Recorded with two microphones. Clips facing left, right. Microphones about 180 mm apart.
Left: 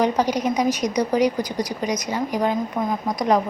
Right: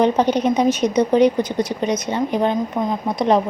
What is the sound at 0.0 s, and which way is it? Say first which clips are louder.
A woman's voice: right 4 dB; 25° right (ahead or behind).